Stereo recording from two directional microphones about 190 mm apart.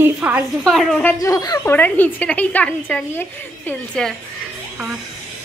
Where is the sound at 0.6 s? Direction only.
Centre (ahead or behind).